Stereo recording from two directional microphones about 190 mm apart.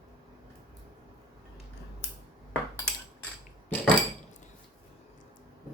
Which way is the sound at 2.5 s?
10° left (ahead or behind).